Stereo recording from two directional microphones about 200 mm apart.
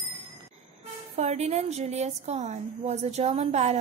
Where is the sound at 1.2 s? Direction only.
35° right (ahead or behind).